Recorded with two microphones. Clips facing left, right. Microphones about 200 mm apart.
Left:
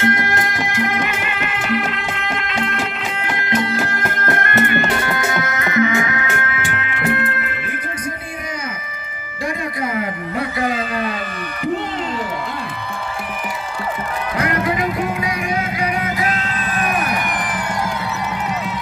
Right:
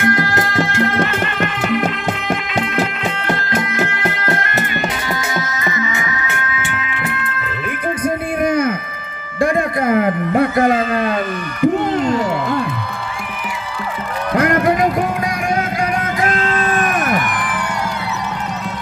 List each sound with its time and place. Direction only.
0.0 s music: 20° left (ahead or behind); by 3.3 s centre (ahead or behind)
3.3 s music: 20° left (ahead or behind)
3.7 s music: 45° left (ahead or behind); by 7.4 s 60° left (ahead or behind)
8.4 s a sound: 55° right (ahead or behind)
14.3 s music: 50° right (ahead or behind)